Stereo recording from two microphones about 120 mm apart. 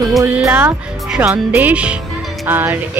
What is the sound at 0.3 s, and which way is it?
Speech, 10° right (ahead or behind).